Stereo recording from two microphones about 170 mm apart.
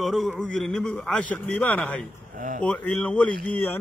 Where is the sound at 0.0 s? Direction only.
Centre (ahead or behind).